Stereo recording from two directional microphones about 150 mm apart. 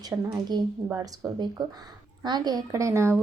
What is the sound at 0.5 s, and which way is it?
Speech, 30° right (ahead or behind).